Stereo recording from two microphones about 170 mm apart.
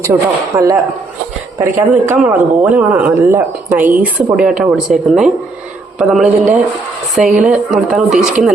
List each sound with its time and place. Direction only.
0.0 s speech: 20° right (ahead or behind); by 8.2 s centre (ahead or behind)